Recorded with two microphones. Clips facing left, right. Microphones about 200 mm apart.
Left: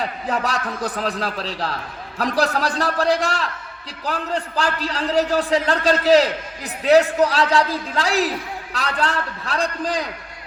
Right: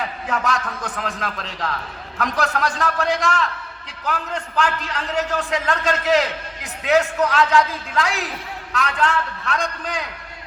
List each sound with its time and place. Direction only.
0.0 s a man's voice: 35° left (ahead or behind)